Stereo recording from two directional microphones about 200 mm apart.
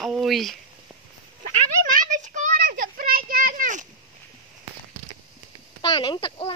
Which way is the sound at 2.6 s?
45° right (ahead or behind).